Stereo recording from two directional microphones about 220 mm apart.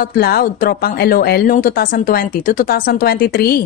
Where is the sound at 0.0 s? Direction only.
45° left (ahead or behind).